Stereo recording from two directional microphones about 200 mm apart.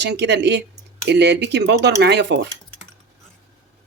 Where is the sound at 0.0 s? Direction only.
60° right (ahead or behind).